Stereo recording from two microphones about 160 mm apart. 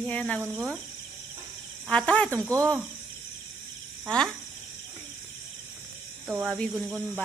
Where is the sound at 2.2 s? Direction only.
20° right (ahead or behind).